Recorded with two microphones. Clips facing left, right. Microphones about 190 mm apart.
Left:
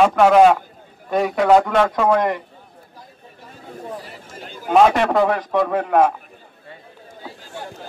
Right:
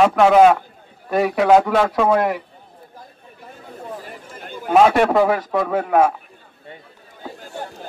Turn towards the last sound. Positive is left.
turn(degrees=-45)  # may be behind; listen again after turning